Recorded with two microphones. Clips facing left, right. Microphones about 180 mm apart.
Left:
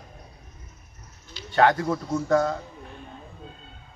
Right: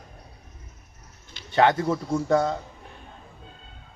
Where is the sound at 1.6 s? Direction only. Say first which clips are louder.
Even; 25° right (ahead or behind).